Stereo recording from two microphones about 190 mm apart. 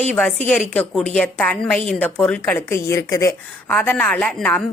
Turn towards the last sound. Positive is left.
turn(degrees=5)  # may be behind; listen again after turning